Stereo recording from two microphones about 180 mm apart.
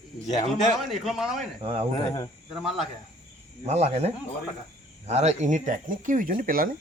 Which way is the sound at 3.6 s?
35° right (ahead or behind).